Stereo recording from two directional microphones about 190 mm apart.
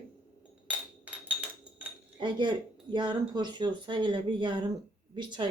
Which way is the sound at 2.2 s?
25° right (ahead or behind).